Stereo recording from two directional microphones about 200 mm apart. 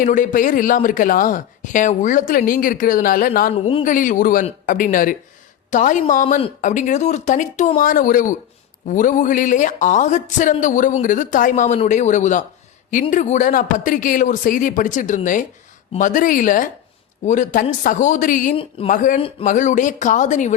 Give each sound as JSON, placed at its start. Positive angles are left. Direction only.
{"t": 0.0, "sound": "speech", "side_deg": 40}
{"t": 3.5, "sound": "a man's voice", "side_deg": 25}
{"t": 3.8, "sound": "speech", "side_deg": 40}